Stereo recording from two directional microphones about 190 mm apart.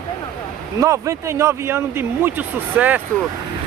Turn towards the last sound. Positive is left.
turn(degrees=-10)  # may be behind; listen again after turning